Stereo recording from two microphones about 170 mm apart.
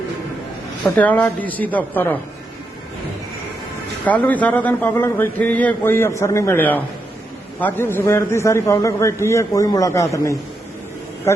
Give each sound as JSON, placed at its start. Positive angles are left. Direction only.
{"t": 0.9, "sound": "a man's voice", "side_deg": 10}
{"t": 4.0, "sound": "a man's voice", "side_deg": 10}